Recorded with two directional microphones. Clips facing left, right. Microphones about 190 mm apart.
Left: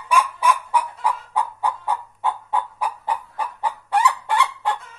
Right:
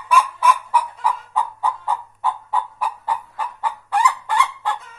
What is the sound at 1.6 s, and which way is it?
Chicken, 15° left (ahead or behind).